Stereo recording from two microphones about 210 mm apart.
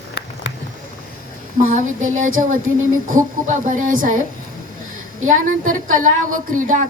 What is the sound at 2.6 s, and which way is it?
Speech, 75° right (ahead or behind).